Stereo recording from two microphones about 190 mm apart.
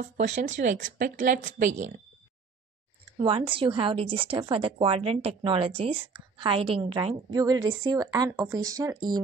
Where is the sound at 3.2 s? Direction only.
25° right (ahead or behind).